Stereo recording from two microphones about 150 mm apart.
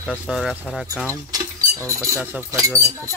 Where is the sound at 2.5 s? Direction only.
20° right (ahead or behind).